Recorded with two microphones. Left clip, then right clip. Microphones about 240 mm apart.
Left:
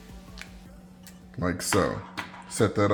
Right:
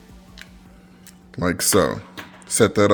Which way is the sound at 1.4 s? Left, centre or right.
Right.